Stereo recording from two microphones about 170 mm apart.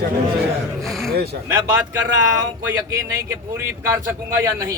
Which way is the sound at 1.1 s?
70° right (ahead or behind).